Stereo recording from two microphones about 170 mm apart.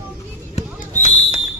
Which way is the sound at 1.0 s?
40° left (ahead or behind).